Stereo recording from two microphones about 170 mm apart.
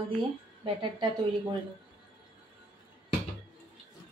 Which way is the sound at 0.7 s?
30° right (ahead or behind).